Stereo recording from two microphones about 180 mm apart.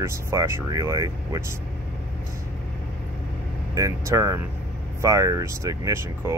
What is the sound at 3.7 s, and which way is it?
Speech, 15° right (ahead or behind).